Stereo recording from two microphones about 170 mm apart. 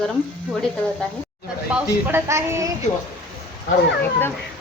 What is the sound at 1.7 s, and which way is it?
A woman's voice, 10° right (ahead or behind).